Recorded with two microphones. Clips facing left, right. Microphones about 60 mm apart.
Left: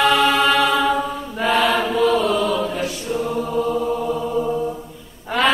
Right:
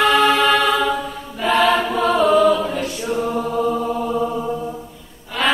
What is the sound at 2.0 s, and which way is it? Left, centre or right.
Chant, right.